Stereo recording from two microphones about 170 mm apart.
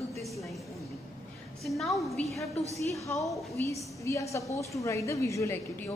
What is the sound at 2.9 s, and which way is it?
A woman's voice, 20° left (ahead or behind).